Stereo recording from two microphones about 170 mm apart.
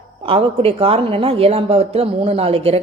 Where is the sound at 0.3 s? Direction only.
35° right (ahead or behind).